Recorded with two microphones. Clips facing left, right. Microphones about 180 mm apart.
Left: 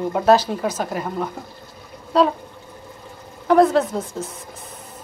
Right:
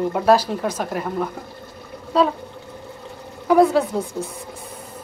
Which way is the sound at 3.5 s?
10° right (ahead or behind).